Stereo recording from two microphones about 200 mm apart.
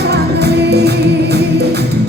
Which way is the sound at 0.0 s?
55° right (ahead or behind).